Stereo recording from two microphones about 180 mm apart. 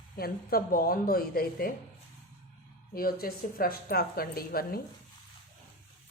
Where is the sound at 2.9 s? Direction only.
55° left (ahead or behind).